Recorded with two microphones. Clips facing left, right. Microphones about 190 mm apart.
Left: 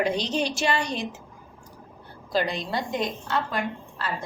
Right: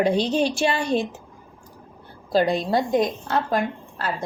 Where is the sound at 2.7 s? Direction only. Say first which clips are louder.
Right 7 dB; 40° right (ahead or behind).